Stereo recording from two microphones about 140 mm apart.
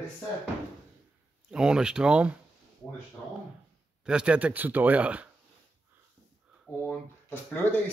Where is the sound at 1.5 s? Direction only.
5° right (ahead or behind).